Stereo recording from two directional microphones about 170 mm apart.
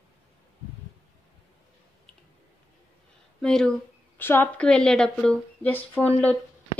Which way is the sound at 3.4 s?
5° left (ahead or behind).